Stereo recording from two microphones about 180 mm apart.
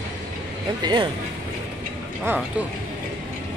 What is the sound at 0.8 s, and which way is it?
Speech, 25° right (ahead or behind).